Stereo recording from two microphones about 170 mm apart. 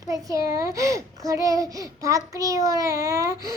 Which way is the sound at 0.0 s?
20° right (ahead or behind).